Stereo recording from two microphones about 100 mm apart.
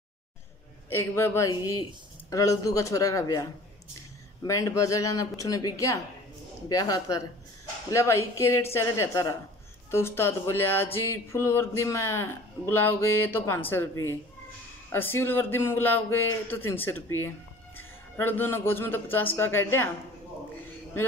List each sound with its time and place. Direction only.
0.8 s speech: 25° left (ahead or behind)
4.5 s speech: 35° left (ahead or behind)
14.9 s a man's voice: 25° left (ahead or behind)